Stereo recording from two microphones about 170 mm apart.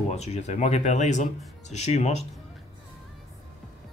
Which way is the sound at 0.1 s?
40° left (ahead or behind).